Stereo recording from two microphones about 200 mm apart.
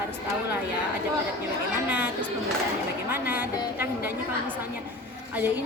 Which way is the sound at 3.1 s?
10° right (ahead or behind).